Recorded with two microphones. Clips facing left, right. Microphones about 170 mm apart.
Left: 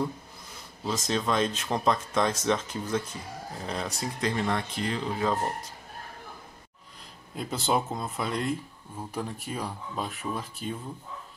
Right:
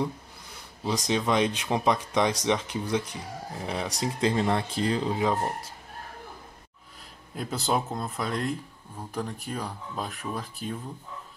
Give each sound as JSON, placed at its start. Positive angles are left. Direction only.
{"t": 0.8, "sound": "speech", "side_deg": -15}
{"t": 4.2, "sound": "speech", "side_deg": -30}
{"t": 5.1, "sound": "speech", "side_deg": -10}
{"t": 7.3, "sound": "speech", "side_deg": 0}